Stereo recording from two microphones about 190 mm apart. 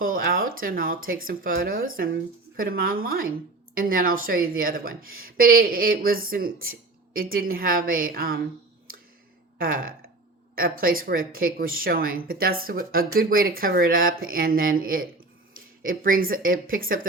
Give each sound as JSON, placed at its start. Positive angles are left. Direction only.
{"t": 0.0, "sound": "speech", "side_deg": -50}
{"t": 9.6, "sound": "speech", "side_deg": -50}